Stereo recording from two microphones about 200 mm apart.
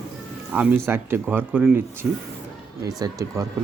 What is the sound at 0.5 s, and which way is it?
Speech, 10° right (ahead or behind).